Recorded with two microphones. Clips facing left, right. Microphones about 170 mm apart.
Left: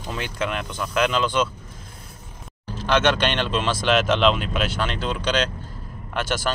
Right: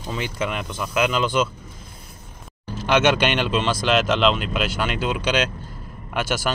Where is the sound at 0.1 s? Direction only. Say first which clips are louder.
Right 1 dB; 5° right (ahead or behind).